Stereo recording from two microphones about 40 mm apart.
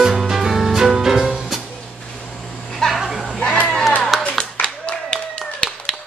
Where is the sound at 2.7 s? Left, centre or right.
Centre.